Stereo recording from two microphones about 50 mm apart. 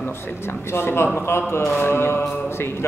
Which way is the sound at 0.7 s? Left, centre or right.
Left.